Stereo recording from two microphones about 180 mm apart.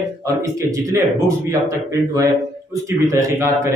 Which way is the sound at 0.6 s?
20° right (ahead or behind).